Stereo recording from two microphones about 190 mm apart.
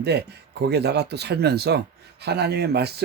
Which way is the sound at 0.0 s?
60° right (ahead or behind).